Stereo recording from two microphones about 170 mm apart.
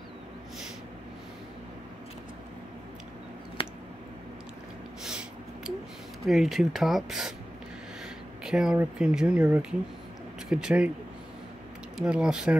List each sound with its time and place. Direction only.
3.6 s squish: 30° left (ahead or behind)
5.0 s a sound: 5° right (ahead or behind)
6.2 s speech: centre (ahead or behind)
8.5 s speech: 5° right (ahead or behind)
12.0 s speech: 5° right (ahead or behind)